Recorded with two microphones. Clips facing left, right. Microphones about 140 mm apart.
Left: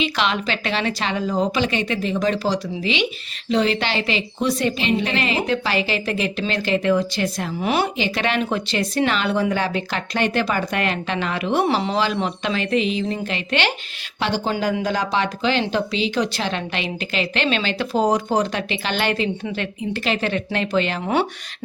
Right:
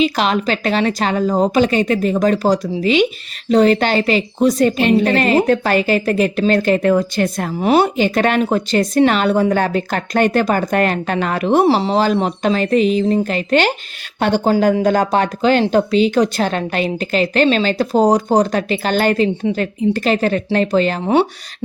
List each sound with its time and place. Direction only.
0.0 s a woman's voice: 40° right (ahead or behind)